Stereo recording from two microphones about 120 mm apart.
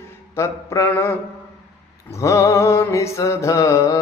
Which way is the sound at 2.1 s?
25° left (ahead or behind).